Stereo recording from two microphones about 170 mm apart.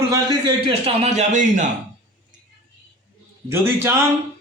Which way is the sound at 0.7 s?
35° right (ahead or behind).